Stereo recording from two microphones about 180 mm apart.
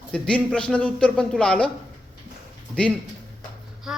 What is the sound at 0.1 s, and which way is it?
Speech, 5° left (ahead or behind).